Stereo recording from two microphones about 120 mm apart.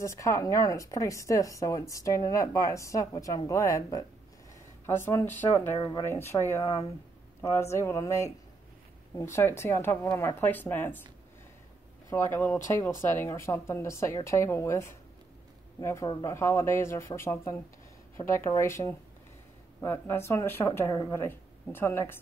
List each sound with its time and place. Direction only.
0.0 s speech: 25° left (ahead or behind)
12.1 s speech: 20° left (ahead or behind)
16.1 s speech: 35° left (ahead or behind)
16.3 s speech: 20° left (ahead or behind)